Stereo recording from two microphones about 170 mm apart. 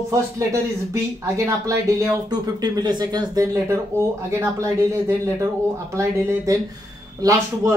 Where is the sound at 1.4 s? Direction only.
20° right (ahead or behind).